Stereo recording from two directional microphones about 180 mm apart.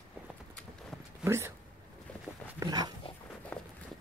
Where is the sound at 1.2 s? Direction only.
15° right (ahead or behind).